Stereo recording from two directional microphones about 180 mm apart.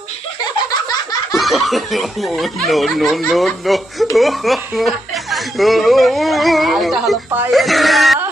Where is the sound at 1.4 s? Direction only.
Centre (ahead or behind).